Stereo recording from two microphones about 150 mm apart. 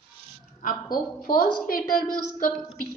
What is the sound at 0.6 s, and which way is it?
Speech, 65° left (ahead or behind).